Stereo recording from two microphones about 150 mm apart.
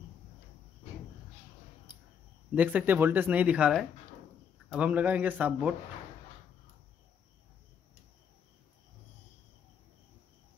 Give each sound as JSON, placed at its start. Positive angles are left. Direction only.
{"t": 2.5, "sound": "speech", "side_deg": -10}